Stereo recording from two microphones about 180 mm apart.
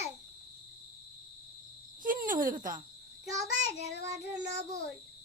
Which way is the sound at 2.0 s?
50° right (ahead or behind).